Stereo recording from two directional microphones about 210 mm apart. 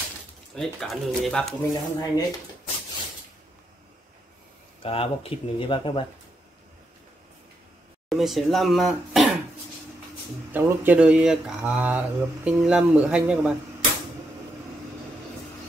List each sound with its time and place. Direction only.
0.6 s speech: centre (ahead or behind)
1.7 s speech: 15° left (ahead or behind)
4.8 s speech: 25° left (ahead or behind)
8.1 s speech: centre (ahead or behind)
10.5 s speech: 10° right (ahead or behind)